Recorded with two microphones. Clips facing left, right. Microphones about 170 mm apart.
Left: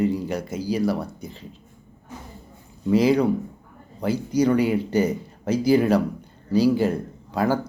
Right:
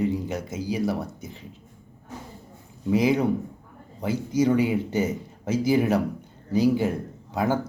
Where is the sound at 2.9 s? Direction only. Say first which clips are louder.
Left 3 dB; 20° right (ahead or behind).